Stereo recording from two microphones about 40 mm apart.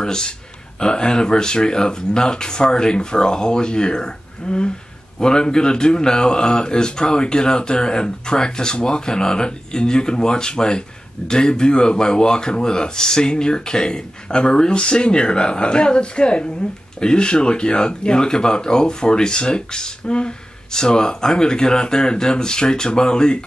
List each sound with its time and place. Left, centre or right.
0.0 s speech: centre